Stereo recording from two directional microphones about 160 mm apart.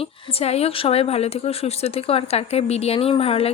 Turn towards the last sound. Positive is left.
turn(degrees=35)  # may be behind; listen again after turning